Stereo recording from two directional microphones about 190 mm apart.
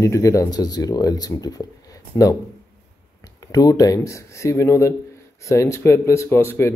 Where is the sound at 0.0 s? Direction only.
15° left (ahead or behind).